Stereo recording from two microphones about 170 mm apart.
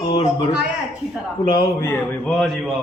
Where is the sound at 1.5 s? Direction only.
20° left (ahead or behind).